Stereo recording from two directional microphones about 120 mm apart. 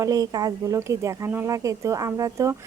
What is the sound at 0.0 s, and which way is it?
Speech, 30° right (ahead or behind).